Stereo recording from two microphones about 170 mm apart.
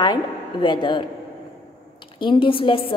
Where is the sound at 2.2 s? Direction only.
30° left (ahead or behind).